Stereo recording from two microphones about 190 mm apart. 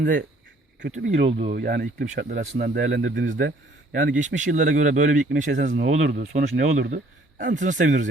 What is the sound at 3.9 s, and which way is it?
Speech, 40° right (ahead or behind).